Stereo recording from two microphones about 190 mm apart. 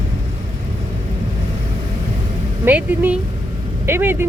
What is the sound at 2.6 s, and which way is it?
Speech, 10° right (ahead or behind).